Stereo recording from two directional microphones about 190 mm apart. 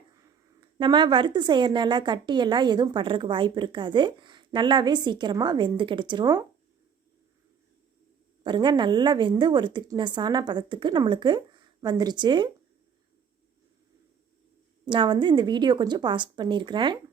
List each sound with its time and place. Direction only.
0.6 s a woman's voice: 25° right (ahead or behind)
8.4 s a woman's voice: 25° right (ahead or behind)
14.8 s a woman's voice: 25° right (ahead or behind)